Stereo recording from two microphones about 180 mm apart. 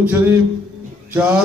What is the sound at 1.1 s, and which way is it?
Music, 10° right (ahead or behind).